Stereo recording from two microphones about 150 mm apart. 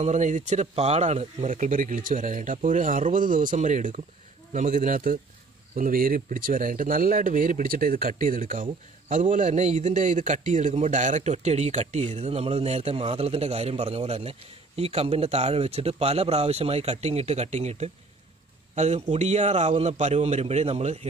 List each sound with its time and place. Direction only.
0.0 s speech: 55° right (ahead or behind)